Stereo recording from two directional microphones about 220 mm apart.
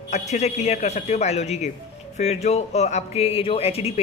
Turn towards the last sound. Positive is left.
turn(degrees=25)  # may be behind; listen again after turning